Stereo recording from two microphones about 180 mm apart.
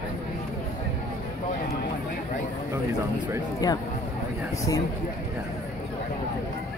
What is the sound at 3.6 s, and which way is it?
Speech, 20° left (ahead or behind).